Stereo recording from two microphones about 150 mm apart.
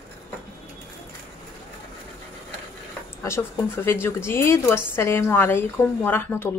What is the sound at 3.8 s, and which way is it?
A woman's voice, 15° left (ahead or behind).